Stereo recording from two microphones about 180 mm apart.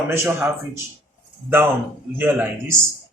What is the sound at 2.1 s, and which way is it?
Speech, 10° right (ahead or behind).